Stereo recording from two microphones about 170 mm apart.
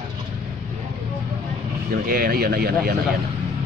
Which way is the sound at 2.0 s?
60° right (ahead or behind).